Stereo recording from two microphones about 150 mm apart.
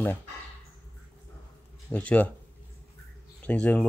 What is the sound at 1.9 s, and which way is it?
Speech, 10° left (ahead or behind).